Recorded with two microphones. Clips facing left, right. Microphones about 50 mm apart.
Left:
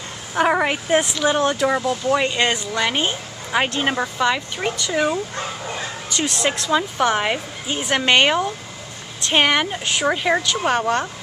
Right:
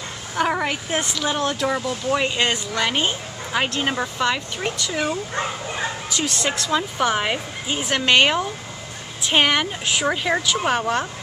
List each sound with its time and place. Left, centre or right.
0.5 s a sound: centre
0.8 s speech: centre
2.2 s speech: centre
5.3 s speech: centre
6.0 s speech: centre